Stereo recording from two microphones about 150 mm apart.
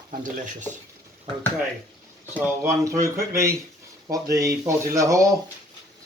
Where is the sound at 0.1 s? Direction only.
55° right (ahead or behind).